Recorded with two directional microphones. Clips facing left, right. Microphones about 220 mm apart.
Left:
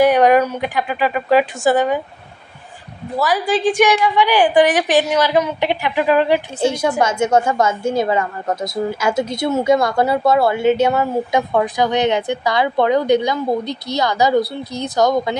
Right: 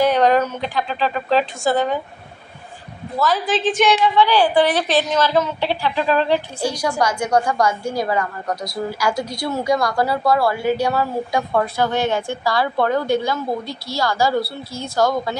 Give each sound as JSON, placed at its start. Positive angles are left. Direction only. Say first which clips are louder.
{"t": 0.0, "sound": "a woman's voice", "louder": "left 3 dB", "side_deg": 15}
{"t": 3.2, "sound": "a woman's voice", "louder": "left 2 dB", "side_deg": 15}
{"t": 6.7, "sound": "a woman's voice", "louder": "left 3 dB", "side_deg": 25}